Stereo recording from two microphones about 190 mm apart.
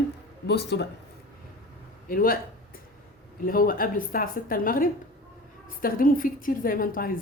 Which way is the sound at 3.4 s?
50° left (ahead or behind).